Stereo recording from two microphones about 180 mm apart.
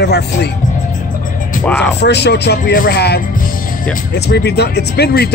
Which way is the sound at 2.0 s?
70° left (ahead or behind).